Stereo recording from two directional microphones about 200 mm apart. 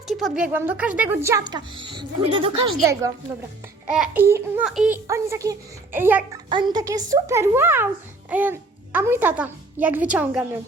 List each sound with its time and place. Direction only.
0.1 s speech: centre (ahead or behind)
5.0 s speech: 15° right (ahead or behind)
6.5 s a child's voice: 20° right (ahead or behind)